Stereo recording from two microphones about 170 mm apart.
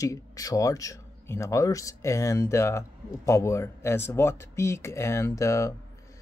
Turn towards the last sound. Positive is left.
turn(degrees=15)  # may be behind; listen again after turning